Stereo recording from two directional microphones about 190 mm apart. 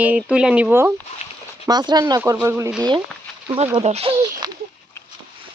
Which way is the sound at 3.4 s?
30° right (ahead or behind).